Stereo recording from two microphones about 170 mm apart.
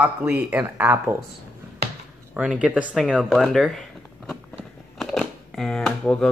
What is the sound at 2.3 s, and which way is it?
Speech, 5° right (ahead or behind).